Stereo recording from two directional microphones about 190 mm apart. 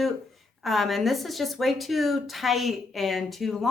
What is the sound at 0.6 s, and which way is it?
Speech, centre (ahead or behind).